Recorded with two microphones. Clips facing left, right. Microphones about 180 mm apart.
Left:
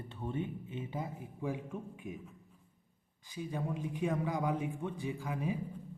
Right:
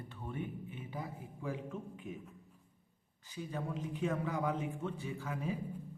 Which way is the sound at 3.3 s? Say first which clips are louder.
Left 2 dB; 10° left (ahead or behind).